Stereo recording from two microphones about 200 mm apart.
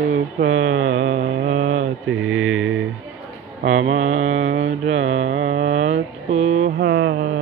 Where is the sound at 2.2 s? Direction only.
85° right.